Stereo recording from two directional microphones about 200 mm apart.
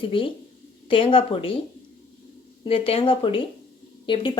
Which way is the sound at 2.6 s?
30° left (ahead or behind).